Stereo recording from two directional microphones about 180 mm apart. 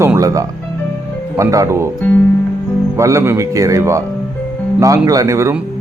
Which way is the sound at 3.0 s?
15° right (ahead or behind).